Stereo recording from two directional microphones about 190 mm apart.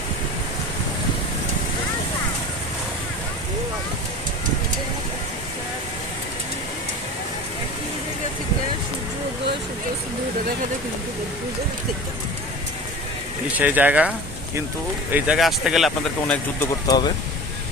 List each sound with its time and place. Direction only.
13.6 s speech: 10° right (ahead or behind)
15.1 s speech: 5° right (ahead or behind)
16.8 s speech: 20° left (ahead or behind)